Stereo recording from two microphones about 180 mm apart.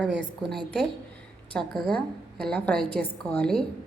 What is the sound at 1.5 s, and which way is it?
A woman's voice, 5° left (ahead or behind).